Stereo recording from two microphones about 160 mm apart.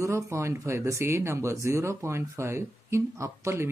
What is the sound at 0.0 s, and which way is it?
Speech, 20° right (ahead or behind).